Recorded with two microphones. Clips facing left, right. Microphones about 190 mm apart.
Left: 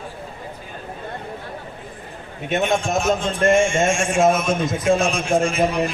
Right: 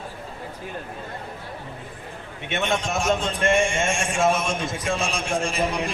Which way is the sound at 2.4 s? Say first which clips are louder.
Left 5 dB; 40° left (ahead or behind).